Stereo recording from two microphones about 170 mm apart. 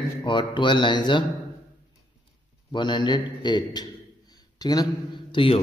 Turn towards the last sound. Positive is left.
turn(degrees=30)  # may be behind; listen again after turning